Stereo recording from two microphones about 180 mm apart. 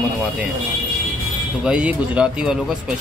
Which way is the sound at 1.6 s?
5° right (ahead or behind).